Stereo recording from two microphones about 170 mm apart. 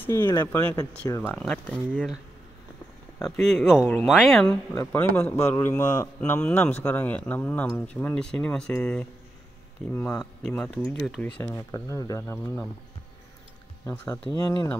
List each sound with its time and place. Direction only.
0.0 s speech: 15° left (ahead or behind)
3.2 s speech: centre (ahead or behind)
10.4 s speech: 5° left (ahead or behind)
11.7 s speech: 20° left (ahead or behind)
13.8 s speech: 15° left (ahead or behind)